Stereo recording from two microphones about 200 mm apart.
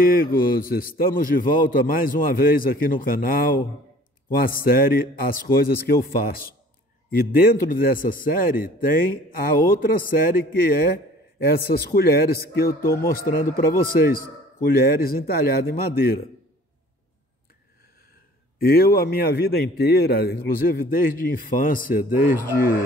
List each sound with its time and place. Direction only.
0.1 s a man's voice: 45° left (ahead or behind)
14.6 s a man's voice: 50° left (ahead or behind)
18.6 s a man's voice: 50° left (ahead or behind)